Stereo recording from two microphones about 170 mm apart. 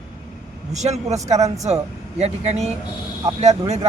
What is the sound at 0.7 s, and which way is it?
Speech, 40° right (ahead or behind).